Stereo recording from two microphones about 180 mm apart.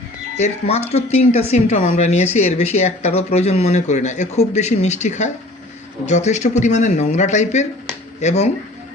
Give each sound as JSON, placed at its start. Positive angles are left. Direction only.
{"t": 0.3, "sound": "speech", "side_deg": 35}